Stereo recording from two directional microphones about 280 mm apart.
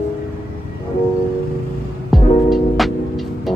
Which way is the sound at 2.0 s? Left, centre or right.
Centre.